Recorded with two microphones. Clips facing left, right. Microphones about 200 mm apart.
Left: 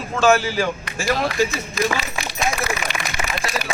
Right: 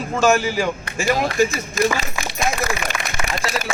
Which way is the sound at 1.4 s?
45° right (ahead or behind).